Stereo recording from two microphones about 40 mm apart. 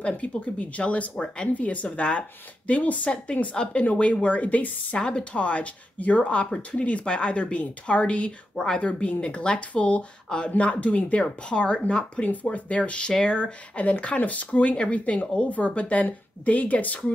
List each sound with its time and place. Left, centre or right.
0.0 s speech: left
4.9 s speech: left
11.2 s speech: left